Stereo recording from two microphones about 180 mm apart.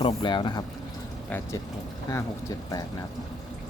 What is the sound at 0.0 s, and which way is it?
Speech, 25° left (ahead or behind).